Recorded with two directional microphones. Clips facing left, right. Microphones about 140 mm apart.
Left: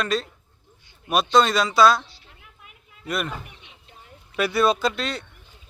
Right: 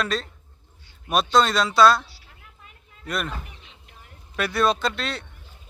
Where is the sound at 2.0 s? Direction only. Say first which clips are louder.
Even; 20° left (ahead or behind).